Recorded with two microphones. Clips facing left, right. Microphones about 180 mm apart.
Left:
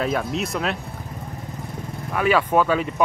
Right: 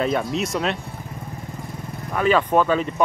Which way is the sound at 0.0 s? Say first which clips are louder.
Right 2 dB; centre (ahead or behind).